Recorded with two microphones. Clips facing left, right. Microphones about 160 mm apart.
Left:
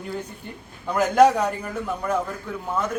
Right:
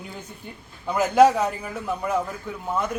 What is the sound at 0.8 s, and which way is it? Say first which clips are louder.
A man's voice: even; 5° right (ahead or behind).